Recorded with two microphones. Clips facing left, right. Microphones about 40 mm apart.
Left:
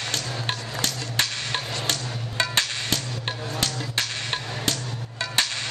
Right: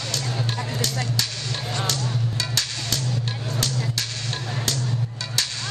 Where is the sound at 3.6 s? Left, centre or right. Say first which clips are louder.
Right 2 dB; left.